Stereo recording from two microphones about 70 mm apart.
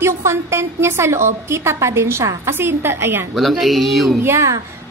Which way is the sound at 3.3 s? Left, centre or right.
Centre.